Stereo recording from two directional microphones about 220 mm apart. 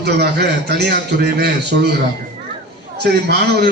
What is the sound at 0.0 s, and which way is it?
A man's voice, 50° right (ahead or behind).